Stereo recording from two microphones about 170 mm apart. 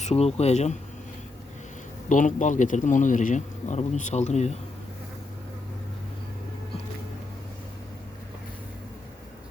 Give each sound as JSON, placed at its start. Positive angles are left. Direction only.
{"t": 0.0, "sound": "speech", "side_deg": 40}
{"t": 2.0, "sound": "speech", "side_deg": 45}